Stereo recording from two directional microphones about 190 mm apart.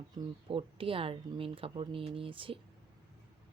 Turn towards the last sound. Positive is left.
turn(degrees=-30)  # may be behind; listen again after turning